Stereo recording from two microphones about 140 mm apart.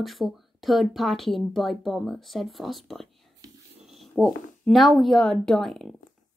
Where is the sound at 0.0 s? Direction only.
Centre (ahead or behind).